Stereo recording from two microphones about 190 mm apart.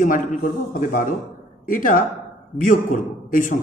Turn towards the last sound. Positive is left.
turn(degrees=45)  # may be behind; listen again after turning